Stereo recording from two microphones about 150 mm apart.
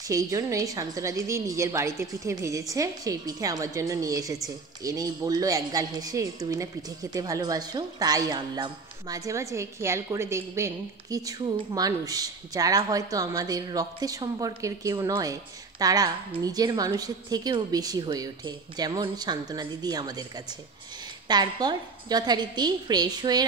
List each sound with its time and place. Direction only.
0.0 s a woman's voice: 20° right (ahead or behind)